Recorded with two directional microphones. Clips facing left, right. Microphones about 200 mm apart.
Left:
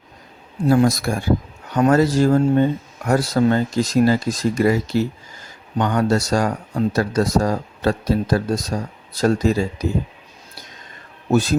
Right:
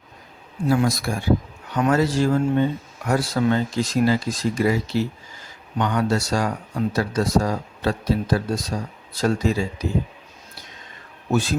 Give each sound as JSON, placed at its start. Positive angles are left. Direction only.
{"t": 0.7, "sound": "speech", "side_deg": 45}
{"t": 11.3, "sound": "speech", "side_deg": 40}